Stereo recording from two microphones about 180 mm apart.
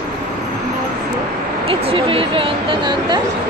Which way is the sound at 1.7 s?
30° right (ahead or behind).